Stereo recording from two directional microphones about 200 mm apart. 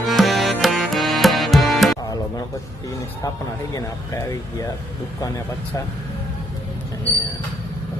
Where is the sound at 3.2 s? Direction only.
15° left (ahead or behind).